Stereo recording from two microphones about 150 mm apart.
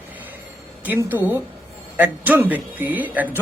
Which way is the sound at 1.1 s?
15° right (ahead or behind).